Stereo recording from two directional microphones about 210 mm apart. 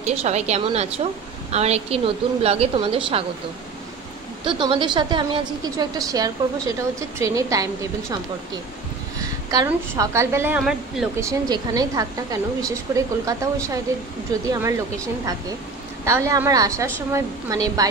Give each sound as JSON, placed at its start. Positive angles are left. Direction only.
{"t": 0.0, "sound": "a woman's voice", "side_deg": -30}
{"t": 4.5, "sound": "a woman's voice", "side_deg": -25}
{"t": 9.2, "sound": "speech", "side_deg": -15}
{"t": 11.1, "sound": "speech", "side_deg": -15}
{"t": 16.1, "sound": "speech", "side_deg": -15}